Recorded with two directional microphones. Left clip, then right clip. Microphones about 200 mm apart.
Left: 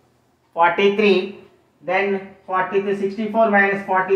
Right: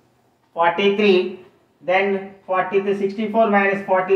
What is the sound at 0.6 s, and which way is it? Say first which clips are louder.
Speech: left 1 dB; 15° left (ahead or behind).